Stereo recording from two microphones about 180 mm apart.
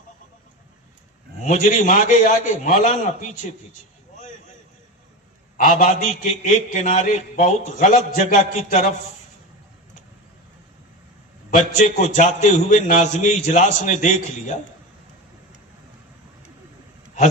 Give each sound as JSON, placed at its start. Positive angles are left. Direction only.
{"t": 1.7, "sound": "a man's voice", "side_deg": 45}
{"t": 5.5, "sound": "a man's voice", "side_deg": 50}
{"t": 11.5, "sound": "a man's voice", "side_deg": 40}